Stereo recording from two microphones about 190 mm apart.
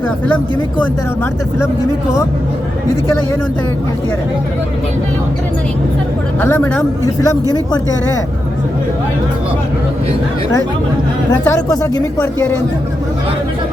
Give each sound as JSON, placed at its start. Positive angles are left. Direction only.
{"t": 6.4, "sound": "a woman's voice", "side_deg": 10}
{"t": 11.3, "sound": "a woman's voice", "side_deg": 15}